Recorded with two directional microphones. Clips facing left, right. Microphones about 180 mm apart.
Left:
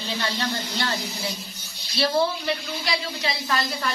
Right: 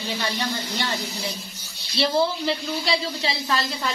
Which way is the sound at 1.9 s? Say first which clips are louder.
Right 1 dB; 25° right (ahead or behind).